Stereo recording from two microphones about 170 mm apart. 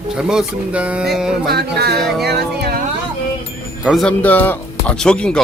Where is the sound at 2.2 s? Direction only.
75° right (ahead or behind).